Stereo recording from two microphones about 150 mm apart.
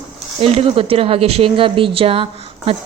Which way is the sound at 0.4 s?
40° right (ahead or behind).